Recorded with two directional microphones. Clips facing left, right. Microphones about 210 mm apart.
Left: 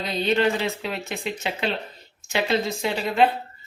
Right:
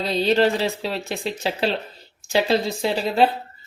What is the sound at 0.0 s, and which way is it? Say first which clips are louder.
Speech: right 3 dB; 30° right (ahead or behind).